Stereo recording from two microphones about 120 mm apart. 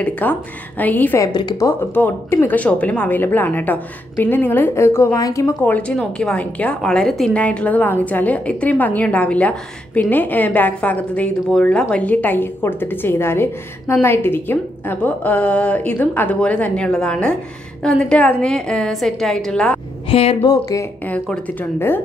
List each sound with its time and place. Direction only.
0.0 s a woman's voice: 15° left (ahead or behind)
1.2 s a woman's voice: 35° left (ahead or behind)
1.6 s a woman's voice: 20° left (ahead or behind)
5.6 s a woman's voice: 10° left (ahead or behind)
20.1 s a woman's voice: 50° left (ahead or behind)
21.1 s a woman's voice: 15° left (ahead or behind)